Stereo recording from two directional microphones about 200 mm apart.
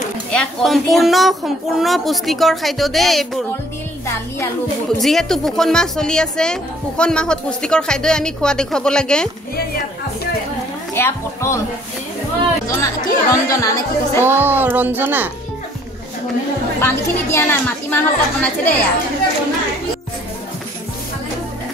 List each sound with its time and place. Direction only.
0.3 s a woman's voice: 5° left (ahead or behind)
5.0 s a woman's voice: centre (ahead or behind)
11.0 s a woman's voice: 15° left (ahead or behind)
12.6 s a woman's voice: 15° left (ahead or behind)
14.2 s child singing: 10° right (ahead or behind)
16.8 s a woman's voice: 10° left (ahead or behind)